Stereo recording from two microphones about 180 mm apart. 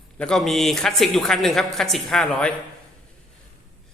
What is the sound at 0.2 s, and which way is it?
A man's voice, 5° left (ahead or behind).